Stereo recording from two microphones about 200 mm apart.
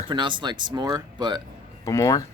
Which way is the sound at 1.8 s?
15° left (ahead or behind).